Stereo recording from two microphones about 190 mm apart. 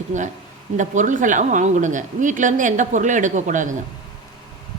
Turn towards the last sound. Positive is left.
turn(degrees=-40)  # may be behind; listen again after turning